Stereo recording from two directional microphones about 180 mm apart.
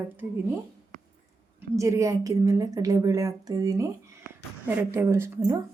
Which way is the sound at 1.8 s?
15° right (ahead or behind).